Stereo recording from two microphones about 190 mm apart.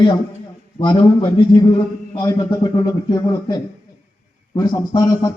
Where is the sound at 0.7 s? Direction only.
25° left (ahead or behind).